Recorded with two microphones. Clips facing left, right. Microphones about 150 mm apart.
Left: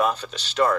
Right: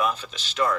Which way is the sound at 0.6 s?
30° left (ahead or behind).